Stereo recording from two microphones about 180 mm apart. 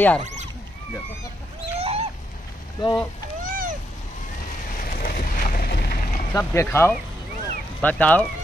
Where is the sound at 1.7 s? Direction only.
35° right (ahead or behind).